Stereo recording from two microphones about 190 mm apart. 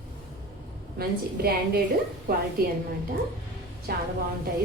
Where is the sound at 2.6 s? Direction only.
55° right (ahead or behind).